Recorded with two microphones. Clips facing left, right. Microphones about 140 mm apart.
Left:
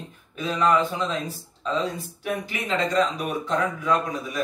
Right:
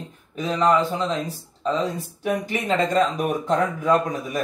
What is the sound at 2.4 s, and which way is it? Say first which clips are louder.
Speech: right 3 dB; 45° right (ahead or behind).